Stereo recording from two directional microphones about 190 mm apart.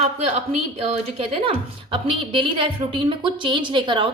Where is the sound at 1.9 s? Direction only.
25° right (ahead or behind).